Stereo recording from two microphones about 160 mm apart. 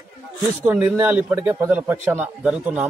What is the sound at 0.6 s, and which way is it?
A man's voice, 10° right (ahead or behind).